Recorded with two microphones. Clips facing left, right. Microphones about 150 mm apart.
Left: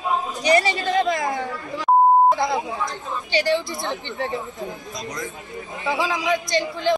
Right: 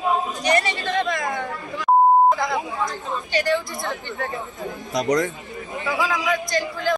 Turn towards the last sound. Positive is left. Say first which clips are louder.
# left 2 dB
turn(degrees=25)  # may be behind; listen again after turning